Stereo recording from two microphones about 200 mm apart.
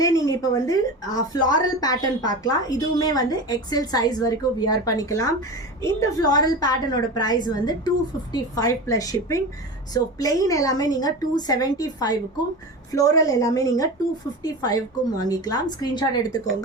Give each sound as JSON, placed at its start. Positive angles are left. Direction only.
{"t": 0.3, "sound": "a woman's voice", "side_deg": 15}